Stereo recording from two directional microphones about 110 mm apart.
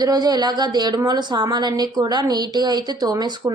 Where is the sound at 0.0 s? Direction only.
35° right (ahead or behind).